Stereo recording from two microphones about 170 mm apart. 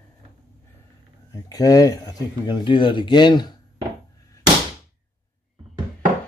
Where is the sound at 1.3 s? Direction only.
20° left (ahead or behind).